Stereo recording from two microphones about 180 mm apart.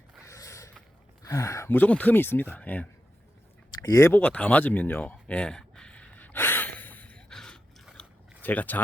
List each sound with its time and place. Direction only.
0.3 s creak: 15° left (ahead or behind)
1.2 s speech: 15° left (ahead or behind)
3.8 s a sound: 15° left (ahead or behind)
8.4 s speech: 10° left (ahead or behind)